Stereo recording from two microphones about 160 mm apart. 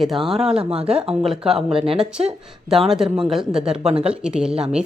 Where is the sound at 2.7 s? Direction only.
Centre (ahead or behind).